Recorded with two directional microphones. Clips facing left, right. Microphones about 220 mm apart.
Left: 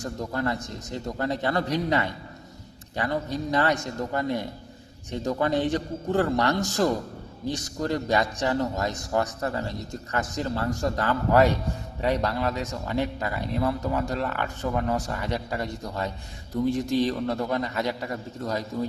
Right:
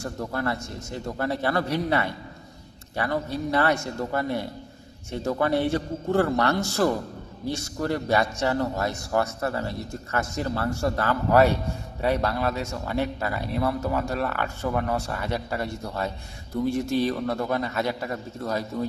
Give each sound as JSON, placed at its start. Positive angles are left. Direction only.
{"t": 0.0, "sound": "speech", "side_deg": 15}